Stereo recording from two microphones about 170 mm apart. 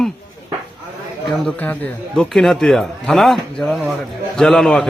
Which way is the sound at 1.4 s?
5° left (ahead or behind).